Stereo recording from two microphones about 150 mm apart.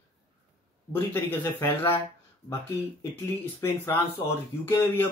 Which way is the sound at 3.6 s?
15° left (ahead or behind).